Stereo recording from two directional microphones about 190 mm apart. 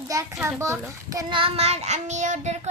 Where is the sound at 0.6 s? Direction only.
15° right (ahead or behind).